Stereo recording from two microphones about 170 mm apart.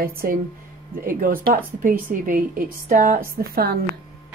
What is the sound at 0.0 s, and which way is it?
A woman's voice, 60° right (ahead or behind).